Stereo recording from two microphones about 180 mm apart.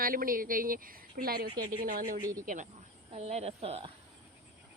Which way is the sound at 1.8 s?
50° right (ahead or behind).